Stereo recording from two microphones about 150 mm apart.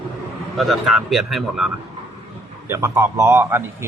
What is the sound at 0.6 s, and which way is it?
Speech, centre (ahead or behind).